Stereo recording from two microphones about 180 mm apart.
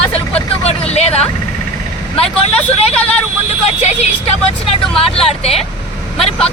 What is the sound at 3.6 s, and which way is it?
Speech, 35° left (ahead or behind).